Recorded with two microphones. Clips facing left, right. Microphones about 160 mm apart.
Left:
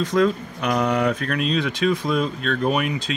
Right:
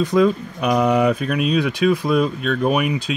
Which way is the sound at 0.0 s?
10° right (ahead or behind).